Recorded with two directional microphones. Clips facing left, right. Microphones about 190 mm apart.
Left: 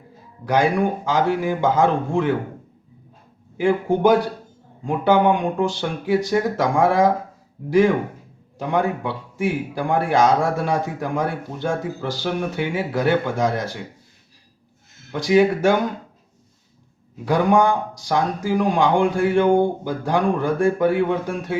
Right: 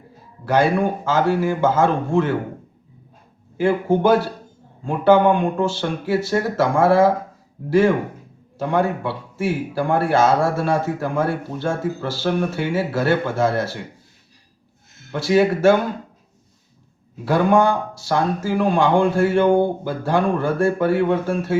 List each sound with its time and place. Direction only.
0.4 s speech: 15° left (ahead or behind)
3.6 s speech: 15° left (ahead or behind)
8.5 s speech: 15° left (ahead or behind)
15.1 s speech: 15° left (ahead or behind)
17.2 s speech: 15° left (ahead or behind)